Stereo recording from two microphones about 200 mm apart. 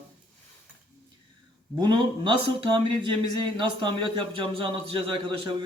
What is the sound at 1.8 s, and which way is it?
Speech, 20° right (ahead or behind).